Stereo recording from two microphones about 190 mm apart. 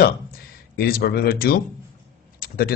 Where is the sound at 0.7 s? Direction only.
55° left (ahead or behind).